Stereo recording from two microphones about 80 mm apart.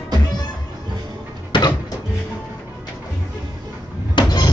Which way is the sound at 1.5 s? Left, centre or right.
Left.